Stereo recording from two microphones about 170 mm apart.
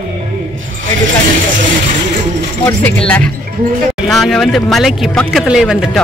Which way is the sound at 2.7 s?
10° left (ahead or behind).